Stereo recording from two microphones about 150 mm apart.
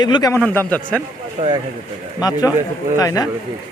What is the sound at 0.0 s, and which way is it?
Speech, 25° left (ahead or behind).